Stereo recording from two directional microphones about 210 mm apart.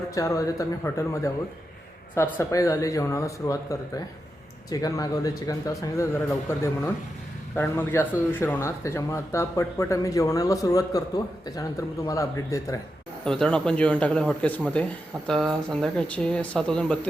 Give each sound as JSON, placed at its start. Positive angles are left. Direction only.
{"t": 0.1, "sound": "speech", "side_deg": 15}
{"t": 13.2, "sound": "speech", "side_deg": 5}